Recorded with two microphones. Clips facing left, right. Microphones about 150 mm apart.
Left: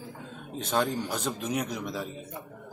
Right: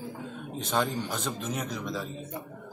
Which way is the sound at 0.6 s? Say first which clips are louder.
Left 1 dB; 5° left (ahead or behind).